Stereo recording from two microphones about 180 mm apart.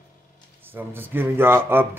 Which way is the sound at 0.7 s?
10° right (ahead or behind).